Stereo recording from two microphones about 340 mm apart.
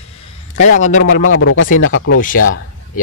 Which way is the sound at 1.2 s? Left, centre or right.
Left.